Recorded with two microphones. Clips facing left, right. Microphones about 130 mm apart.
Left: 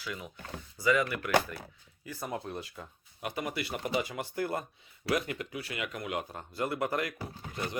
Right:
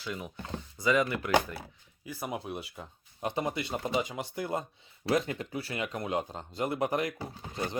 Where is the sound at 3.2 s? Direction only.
25° right (ahead or behind).